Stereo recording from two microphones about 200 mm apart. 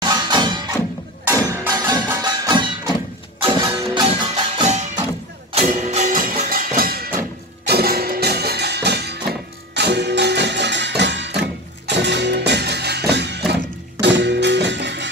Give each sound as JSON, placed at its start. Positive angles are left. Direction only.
{"t": 0.0, "sound": "music", "side_deg": -20}
{"t": 4.6, "sound": "music", "side_deg": -35}